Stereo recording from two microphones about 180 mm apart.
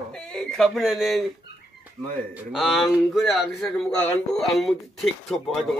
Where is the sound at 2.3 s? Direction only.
Centre (ahead or behind).